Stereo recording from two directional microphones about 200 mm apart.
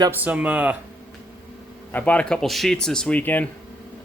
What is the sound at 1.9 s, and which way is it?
Speech, 5° left (ahead or behind).